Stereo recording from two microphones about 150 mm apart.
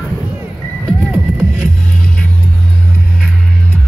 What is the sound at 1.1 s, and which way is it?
Music, 15° right (ahead or behind).